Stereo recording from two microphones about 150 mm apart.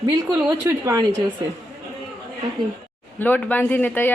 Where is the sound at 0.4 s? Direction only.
20° right (ahead or behind).